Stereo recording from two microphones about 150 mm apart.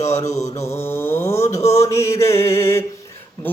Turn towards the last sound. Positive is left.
turn(degrees=20)  # may be behind; listen again after turning